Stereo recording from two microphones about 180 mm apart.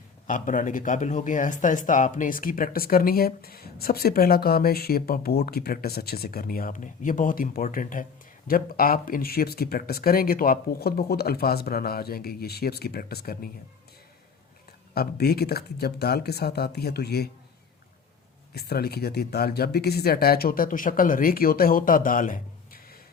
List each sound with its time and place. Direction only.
0.3 s speech: 45° left (ahead or behind)
14.9 s speech: 60° left (ahead or behind)
18.5 s speech: 60° left (ahead or behind)